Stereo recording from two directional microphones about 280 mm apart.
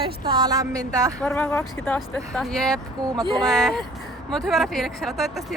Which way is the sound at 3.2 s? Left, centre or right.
Centre.